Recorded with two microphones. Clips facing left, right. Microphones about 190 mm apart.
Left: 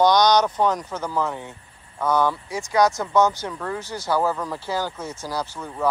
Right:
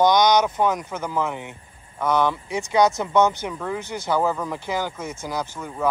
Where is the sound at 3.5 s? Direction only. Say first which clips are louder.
Right 1 dB; 10° right (ahead or behind).